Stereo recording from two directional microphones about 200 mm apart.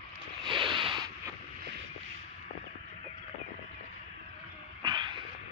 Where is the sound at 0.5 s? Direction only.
25° right (ahead or behind).